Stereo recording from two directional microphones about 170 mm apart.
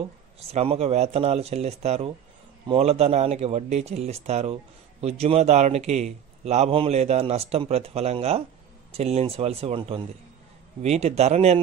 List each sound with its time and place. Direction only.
0.4 s a man's voice: 35° right (ahead or behind)